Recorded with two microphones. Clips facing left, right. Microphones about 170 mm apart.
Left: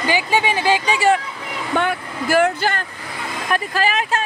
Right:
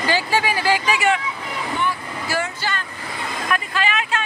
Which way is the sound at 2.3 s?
55° left (ahead or behind).